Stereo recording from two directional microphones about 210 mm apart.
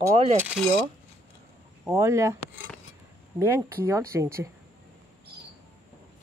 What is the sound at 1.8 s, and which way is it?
Speech, 15° right (ahead or behind).